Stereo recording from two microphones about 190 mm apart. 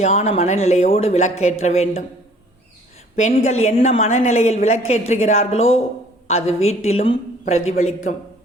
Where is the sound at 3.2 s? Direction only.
40° left (ahead or behind).